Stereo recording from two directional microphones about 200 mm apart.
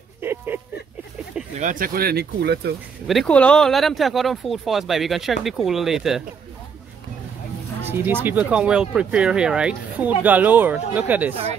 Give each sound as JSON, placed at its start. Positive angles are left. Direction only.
{"t": 0.2, "sound": "a sound", "side_deg": -10}
{"t": 1.6, "sound": "speech", "side_deg": -45}
{"t": 3.1, "sound": "speech", "side_deg": 5}
{"t": 7.8, "sound": "speech", "side_deg": -10}